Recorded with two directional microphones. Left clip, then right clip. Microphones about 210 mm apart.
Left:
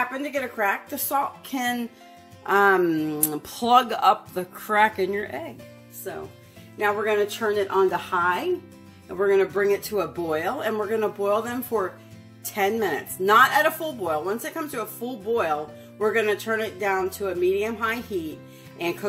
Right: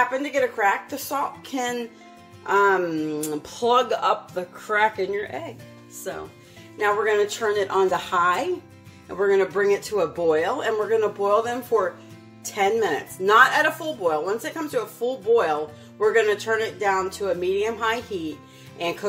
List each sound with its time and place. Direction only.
0.1 s speech: 40° left (ahead or behind)
6.8 s a woman's voice: 35° left (ahead or behind)
9.2 s speech: 35° left (ahead or behind)